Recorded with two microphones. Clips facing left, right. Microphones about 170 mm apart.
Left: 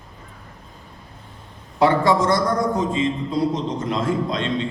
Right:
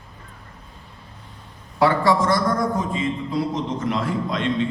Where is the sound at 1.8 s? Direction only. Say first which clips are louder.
Left 1 dB; 20° left (ahead or behind).